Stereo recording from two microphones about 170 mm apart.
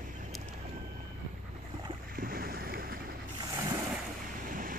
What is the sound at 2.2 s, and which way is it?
Boat, 60° right (ahead or behind).